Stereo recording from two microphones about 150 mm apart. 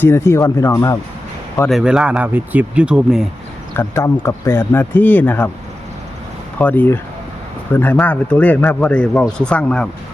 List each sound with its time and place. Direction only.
0.0 s speech: 15° left (ahead or behind)
1.7 s speech: 5° right (ahead or behind)
3.8 s speech: 15° left (ahead or behind)
6.6 s speech: 10° left (ahead or behind)